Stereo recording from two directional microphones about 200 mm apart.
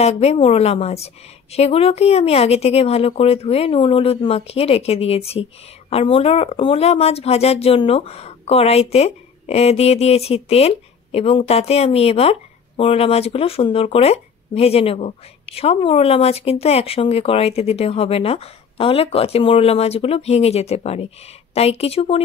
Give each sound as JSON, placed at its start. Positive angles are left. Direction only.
{"t": 0.0, "sound": "a woman's voice", "side_deg": 30}